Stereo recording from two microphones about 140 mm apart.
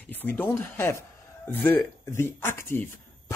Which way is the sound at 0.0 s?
15° left (ahead or behind).